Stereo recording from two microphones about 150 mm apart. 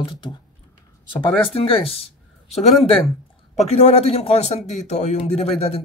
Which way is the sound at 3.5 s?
45° left (ahead or behind).